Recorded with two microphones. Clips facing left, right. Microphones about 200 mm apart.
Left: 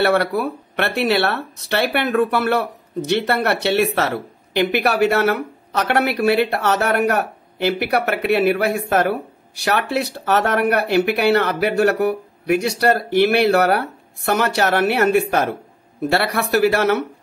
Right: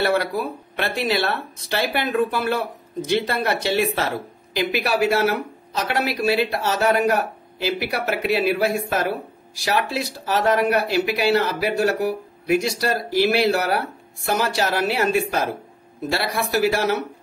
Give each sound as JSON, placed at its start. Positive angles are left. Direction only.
{"t": 0.0, "sound": "speech", "side_deg": 65}